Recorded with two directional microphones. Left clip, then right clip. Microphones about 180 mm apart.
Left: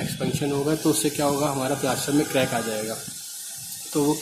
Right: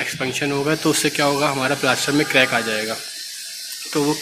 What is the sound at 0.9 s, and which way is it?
Speech, centre (ahead or behind).